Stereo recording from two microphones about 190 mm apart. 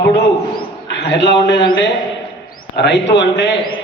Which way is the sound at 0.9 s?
60° left (ahead or behind).